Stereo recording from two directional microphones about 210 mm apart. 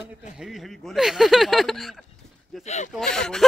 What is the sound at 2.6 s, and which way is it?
Speech, 35° left (ahead or behind).